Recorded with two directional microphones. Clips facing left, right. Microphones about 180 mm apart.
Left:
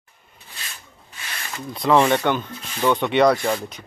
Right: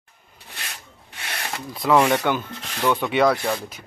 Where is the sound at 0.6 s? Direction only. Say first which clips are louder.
Right 2 dB; 65° right (ahead or behind).